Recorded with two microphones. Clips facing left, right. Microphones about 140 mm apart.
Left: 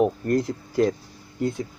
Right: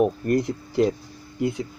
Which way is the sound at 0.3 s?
20° right (ahead or behind).